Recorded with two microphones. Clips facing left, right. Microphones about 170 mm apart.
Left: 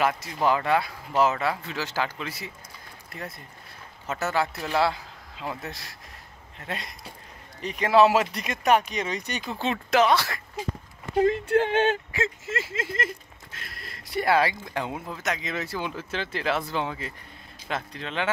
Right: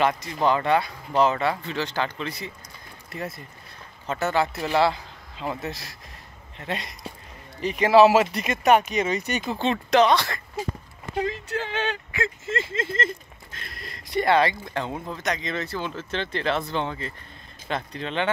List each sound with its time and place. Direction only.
0.0 s speech: 5° left (ahead or behind)
11.1 s speech: 55° left (ahead or behind)
12.4 s speech: 10° left (ahead or behind)